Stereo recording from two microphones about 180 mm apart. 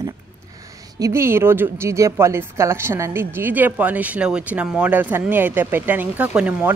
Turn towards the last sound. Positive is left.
turn(degrees=-5)  # may be behind; listen again after turning